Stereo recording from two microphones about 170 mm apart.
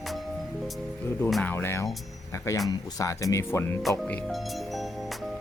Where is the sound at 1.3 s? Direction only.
10° left (ahead or behind).